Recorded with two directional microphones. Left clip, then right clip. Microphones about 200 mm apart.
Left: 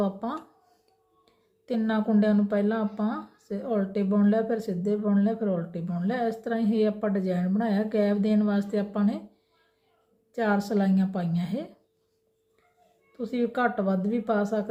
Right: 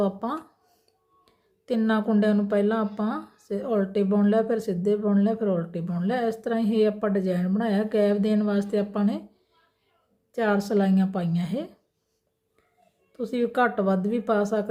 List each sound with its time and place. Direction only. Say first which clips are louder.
0.0 s a woman's voice: right 3 dB; 20° right (ahead or behind)
10.3 s a woman's voice: right 3 dB; 20° right (ahead or behind)
13.1 s a woman's voice: right 4 dB; 20° right (ahead or behind)